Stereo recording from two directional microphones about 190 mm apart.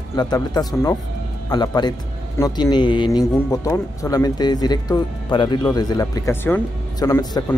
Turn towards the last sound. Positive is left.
turn(degrees=15)  # may be behind; listen again after turning